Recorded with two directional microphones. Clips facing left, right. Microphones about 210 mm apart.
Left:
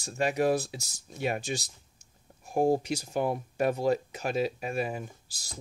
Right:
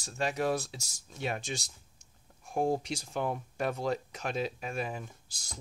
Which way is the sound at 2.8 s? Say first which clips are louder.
Left 5 dB; 10° left (ahead or behind).